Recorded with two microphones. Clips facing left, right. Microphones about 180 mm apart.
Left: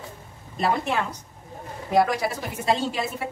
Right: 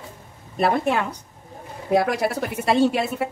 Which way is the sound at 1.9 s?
60° right (ahead or behind).